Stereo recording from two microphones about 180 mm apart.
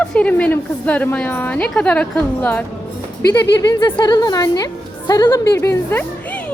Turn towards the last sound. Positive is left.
turn(degrees=15)  # may be behind; listen again after turning